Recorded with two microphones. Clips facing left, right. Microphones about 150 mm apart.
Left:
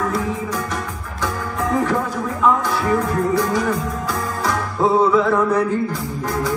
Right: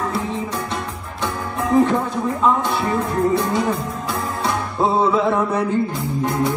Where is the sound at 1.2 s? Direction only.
25° right (ahead or behind).